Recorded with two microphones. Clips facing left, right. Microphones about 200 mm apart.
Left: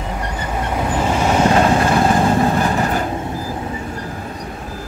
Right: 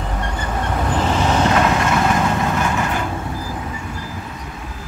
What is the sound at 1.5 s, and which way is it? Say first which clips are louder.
Vehicle: left 3 dB; 30° left (ahead or behind).